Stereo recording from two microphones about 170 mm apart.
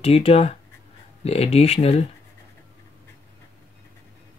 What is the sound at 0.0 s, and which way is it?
Speech, 35° left (ahead or behind).